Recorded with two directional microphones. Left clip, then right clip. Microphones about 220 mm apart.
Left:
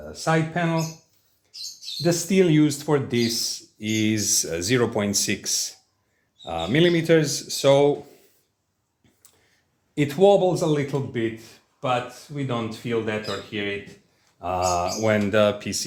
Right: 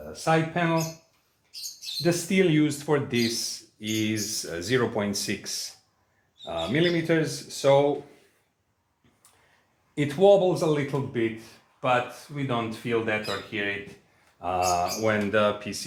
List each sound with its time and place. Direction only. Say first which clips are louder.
0.1 s speech: left 1 dB; 25° left (ahead or behind)
2.0 s speech: left 3 dB; 30° left (ahead or behind); by 7.9 s 45° left (ahead or behind)
9.9 s speech: left 2 dB; 30° left (ahead or behind)